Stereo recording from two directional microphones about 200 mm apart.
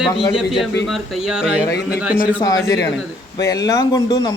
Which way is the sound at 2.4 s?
15° left (ahead or behind).